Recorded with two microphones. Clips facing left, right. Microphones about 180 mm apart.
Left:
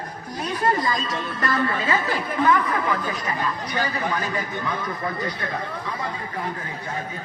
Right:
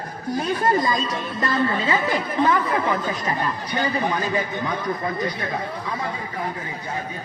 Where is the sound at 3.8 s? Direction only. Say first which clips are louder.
Right 3 dB; 20° right (ahead or behind).